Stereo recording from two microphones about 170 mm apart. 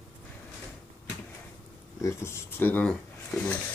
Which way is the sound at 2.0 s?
15° left (ahead or behind).